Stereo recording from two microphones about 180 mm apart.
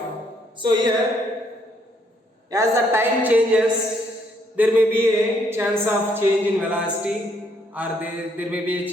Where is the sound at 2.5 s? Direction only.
15° right (ahead or behind).